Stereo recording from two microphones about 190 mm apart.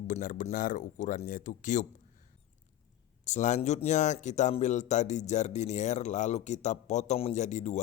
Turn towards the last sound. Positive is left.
turn(degrees=40)  # may be behind; listen again after turning